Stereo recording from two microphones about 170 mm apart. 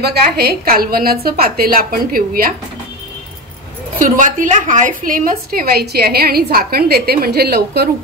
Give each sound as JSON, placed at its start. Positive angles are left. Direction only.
{"t": 0.0, "sound": "a woman's voice", "side_deg": -70}
{"t": 4.0, "sound": "a woman's voice", "side_deg": -50}